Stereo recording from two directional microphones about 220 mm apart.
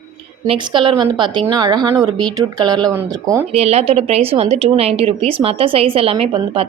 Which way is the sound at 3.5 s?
30° right (ahead or behind).